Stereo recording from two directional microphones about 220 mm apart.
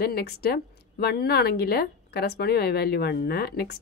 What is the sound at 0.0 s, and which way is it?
A woman's voice, 45° left (ahead or behind).